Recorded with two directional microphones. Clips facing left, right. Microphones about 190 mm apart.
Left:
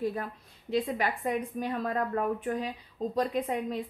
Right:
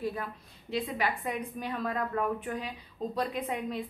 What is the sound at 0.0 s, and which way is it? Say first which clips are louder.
A woman's voice: left 2 dB; 45° left (ahead or behind).